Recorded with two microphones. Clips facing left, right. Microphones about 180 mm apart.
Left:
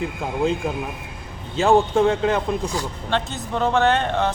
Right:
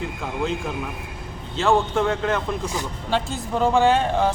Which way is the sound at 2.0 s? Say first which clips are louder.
Left 3 dB; 20° left (ahead or behind).